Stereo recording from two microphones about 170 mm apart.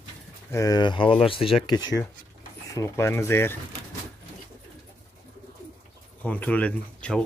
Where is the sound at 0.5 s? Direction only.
20° left (ahead or behind).